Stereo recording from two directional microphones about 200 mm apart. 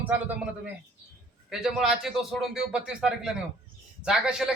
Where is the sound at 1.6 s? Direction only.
Centre (ahead or behind).